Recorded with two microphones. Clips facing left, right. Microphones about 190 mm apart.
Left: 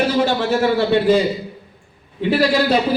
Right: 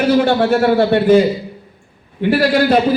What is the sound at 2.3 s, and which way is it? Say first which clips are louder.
Speech: right 3 dB; 55° right (ahead or behind).